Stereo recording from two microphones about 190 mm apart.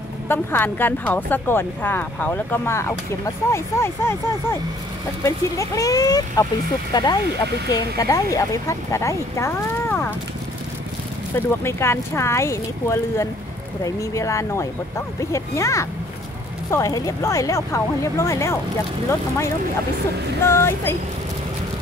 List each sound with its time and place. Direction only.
0.3 s speech: 10° left (ahead or behind)
11.3 s speech: 15° left (ahead or behind)